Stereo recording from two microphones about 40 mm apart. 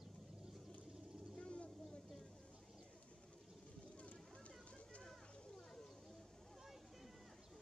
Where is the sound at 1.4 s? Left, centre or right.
Left.